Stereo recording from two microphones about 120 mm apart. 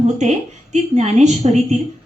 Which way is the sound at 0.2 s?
70° right (ahead or behind).